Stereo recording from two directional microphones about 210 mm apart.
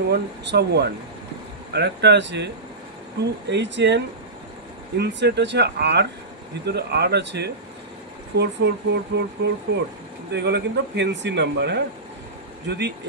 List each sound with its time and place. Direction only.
0.1 s speech: 50° right (ahead or behind)